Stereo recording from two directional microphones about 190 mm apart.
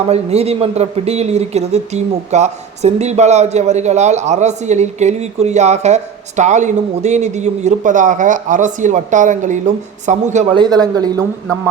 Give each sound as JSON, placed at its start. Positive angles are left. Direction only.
{"t": 0.1, "sound": "speech", "side_deg": -35}
{"t": 10.5, "sound": "speech", "side_deg": -20}